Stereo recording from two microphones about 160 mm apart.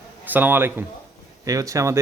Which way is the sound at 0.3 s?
10° right (ahead or behind).